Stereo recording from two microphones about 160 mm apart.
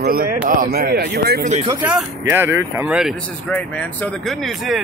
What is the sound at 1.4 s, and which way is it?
Speech, 45° right (ahead or behind).